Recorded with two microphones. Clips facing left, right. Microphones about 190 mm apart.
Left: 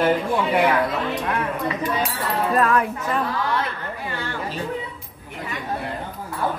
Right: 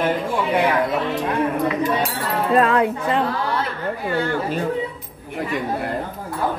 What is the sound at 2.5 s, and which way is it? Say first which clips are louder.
Speech: right 5 dB; 25° right (ahead or behind).